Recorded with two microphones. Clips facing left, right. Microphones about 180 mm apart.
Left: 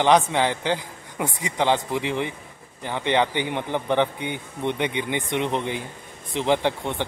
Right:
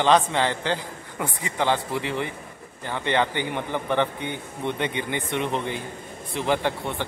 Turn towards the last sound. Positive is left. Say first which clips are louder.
# left 2 dB
turn(degrees=15)  # may be behind; listen again after turning